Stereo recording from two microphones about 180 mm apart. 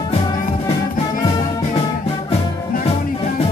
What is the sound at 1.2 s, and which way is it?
Music, 25° left (ahead or behind).